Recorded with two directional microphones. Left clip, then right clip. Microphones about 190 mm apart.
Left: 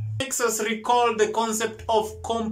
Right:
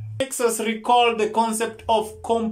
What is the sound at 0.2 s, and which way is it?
Speech, 15° right (ahead or behind).